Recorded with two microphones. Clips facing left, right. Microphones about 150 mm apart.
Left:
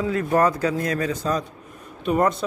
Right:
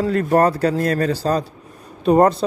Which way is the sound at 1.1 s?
30° right (ahead or behind).